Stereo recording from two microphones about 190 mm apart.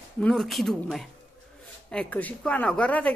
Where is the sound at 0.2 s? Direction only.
Centre (ahead or behind).